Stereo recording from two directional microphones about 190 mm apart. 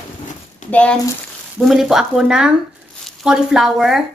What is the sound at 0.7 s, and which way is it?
Speech, 5° left (ahead or behind).